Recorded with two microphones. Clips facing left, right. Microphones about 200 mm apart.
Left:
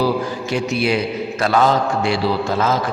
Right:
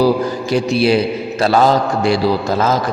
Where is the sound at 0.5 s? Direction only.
35° right (ahead or behind).